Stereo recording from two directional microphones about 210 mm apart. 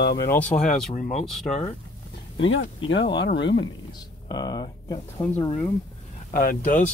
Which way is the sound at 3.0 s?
25° left (ahead or behind).